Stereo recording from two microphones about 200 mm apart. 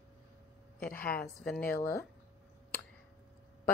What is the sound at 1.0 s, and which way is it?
Speech, 50° left (ahead or behind).